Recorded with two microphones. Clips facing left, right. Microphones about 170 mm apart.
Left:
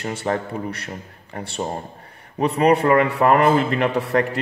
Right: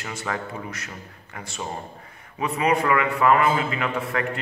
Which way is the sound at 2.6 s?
35° left (ahead or behind).